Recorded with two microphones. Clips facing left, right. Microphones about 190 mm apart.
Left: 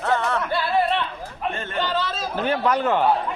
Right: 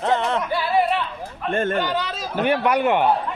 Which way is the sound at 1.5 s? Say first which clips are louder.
Right 9 dB; 50° right (ahead or behind).